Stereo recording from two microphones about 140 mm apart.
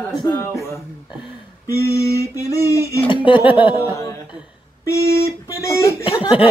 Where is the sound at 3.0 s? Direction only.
40° left (ahead or behind).